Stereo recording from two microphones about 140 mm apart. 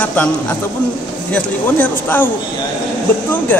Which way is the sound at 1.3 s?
10° left (ahead or behind).